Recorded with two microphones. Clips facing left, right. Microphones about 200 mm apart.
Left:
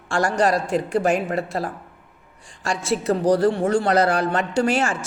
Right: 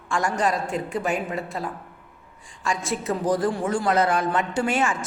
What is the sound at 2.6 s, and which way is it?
A woman's voice, 80° left.